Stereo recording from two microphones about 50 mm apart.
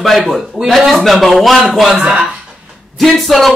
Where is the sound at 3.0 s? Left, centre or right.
Centre.